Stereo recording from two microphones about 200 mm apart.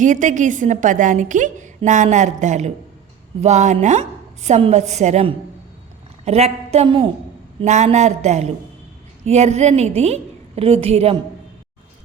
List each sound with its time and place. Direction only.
0.0 s a woman's voice: 40° right (ahead or behind)